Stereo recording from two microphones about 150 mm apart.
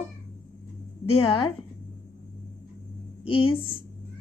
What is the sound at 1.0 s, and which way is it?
Speech, 40° left (ahead or behind).